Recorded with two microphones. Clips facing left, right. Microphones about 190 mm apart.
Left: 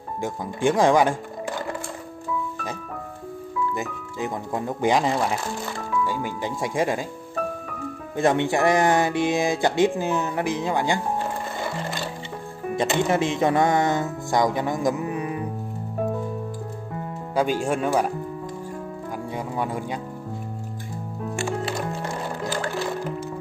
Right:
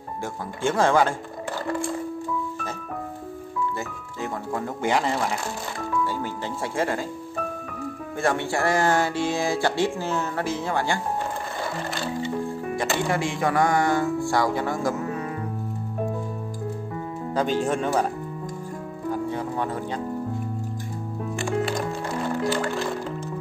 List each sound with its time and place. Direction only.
0.2 s speech: 15° left (ahead or behind)
3.7 s speech: 15° left (ahead or behind)
8.2 s speech: 20° left (ahead or behind)
12.7 s music: 20° left (ahead or behind)
17.3 s speech: 10° left (ahead or behind)
19.1 s music: 10° left (ahead or behind)